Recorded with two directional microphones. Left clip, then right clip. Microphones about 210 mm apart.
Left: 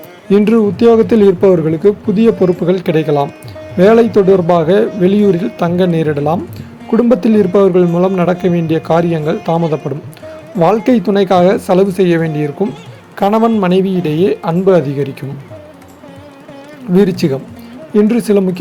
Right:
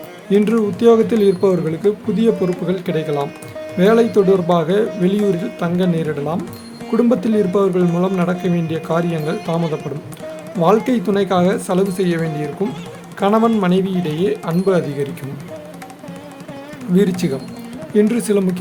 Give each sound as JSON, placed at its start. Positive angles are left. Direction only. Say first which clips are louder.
{"t": 0.3, "sound": "speech", "louder": "left 5 dB", "side_deg": 25}
{"t": 9.5, "sound": "speech", "louder": "left 9 dB", "side_deg": 0}
{"t": 10.6, "sound": "speech", "louder": "left 4 dB", "side_deg": 20}
{"t": 16.9, "sound": "speech", "louder": "left 6 dB", "side_deg": 20}